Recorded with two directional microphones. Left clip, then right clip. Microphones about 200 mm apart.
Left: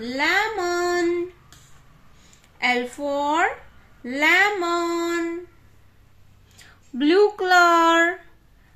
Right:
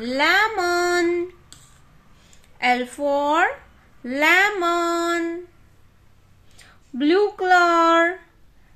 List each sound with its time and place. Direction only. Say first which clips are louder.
0.0 s a sound: right 3 dB; 30° right (ahead or behind)
2.6 s female singing: right 2 dB; 20° right (ahead or behind)
6.5 s speech: even; 5° right (ahead or behind)